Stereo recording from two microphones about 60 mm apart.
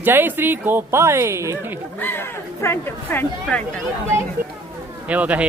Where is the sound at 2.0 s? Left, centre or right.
Left.